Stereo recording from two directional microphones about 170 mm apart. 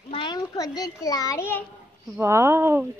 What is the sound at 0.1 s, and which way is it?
A child's voice, 25° left (ahead or behind).